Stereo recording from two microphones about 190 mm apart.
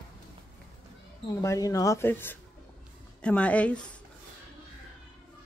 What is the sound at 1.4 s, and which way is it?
Speech, 15° left (ahead or behind).